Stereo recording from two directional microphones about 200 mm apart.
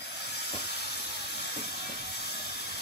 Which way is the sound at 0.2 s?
55° left (ahead or behind).